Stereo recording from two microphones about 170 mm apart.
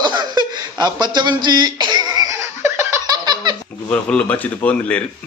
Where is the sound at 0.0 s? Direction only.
25° right (ahead or behind).